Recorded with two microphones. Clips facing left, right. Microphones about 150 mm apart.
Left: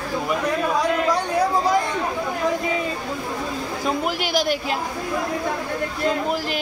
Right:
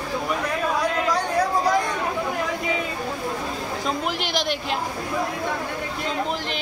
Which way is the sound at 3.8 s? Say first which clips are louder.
Left 4 dB; 5° left (ahead or behind).